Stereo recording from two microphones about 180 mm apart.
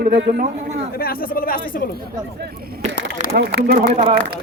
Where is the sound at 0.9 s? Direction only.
55° left (ahead or behind).